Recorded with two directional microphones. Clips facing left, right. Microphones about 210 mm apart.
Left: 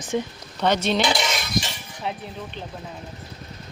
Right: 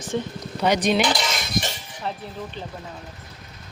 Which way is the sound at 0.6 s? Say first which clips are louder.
Right 1 dB; 10° right (ahead or behind).